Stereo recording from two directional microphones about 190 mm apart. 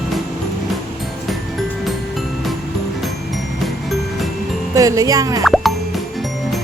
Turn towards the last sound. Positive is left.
turn(degrees=0)  # may be behind; listen again after turning